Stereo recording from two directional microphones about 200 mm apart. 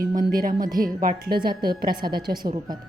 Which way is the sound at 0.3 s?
45° right (ahead or behind).